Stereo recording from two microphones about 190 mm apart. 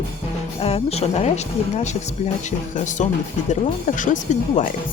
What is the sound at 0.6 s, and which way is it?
Speech, 35° left (ahead or behind).